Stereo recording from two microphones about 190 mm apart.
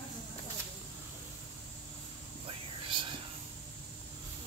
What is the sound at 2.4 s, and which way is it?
Whispering, 25° right (ahead or behind).